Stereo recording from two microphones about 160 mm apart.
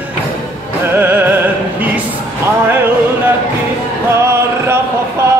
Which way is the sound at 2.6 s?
15° right (ahead or behind).